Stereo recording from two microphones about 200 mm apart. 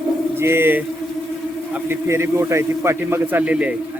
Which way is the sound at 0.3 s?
10° right (ahead or behind).